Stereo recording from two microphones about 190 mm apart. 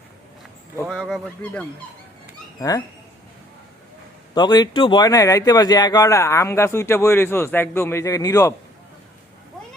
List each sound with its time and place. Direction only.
0.9 s speech: centre (ahead or behind)
2.6 s speech: 20° left (ahead or behind)
4.4 s speech: 20° left (ahead or behind)